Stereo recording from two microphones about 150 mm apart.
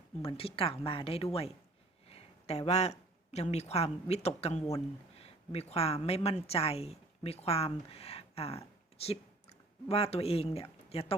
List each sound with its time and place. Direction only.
0.3 s a woman's voice: 40° left (ahead or behind)